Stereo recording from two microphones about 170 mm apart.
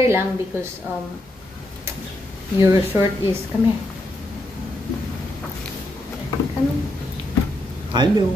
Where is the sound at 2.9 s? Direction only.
15° right (ahead or behind).